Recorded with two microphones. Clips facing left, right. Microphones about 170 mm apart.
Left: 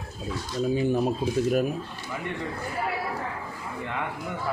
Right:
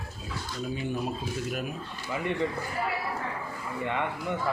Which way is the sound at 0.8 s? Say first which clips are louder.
Left 7 dB; 35° left (ahead or behind).